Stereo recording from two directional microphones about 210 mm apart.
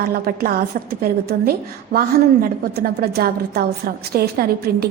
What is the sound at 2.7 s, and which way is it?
A woman's voice, 45° right (ahead or behind).